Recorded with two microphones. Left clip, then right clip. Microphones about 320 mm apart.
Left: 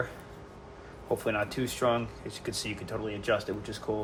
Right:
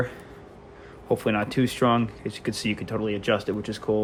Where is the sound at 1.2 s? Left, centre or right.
Right.